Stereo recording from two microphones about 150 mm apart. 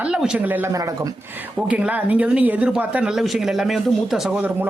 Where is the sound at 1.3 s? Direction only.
10° right (ahead or behind).